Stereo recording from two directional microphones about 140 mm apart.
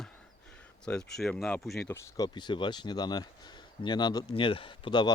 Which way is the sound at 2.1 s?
30° left (ahead or behind).